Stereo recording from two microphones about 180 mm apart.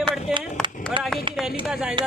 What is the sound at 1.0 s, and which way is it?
Speech, 25° right (ahead or behind).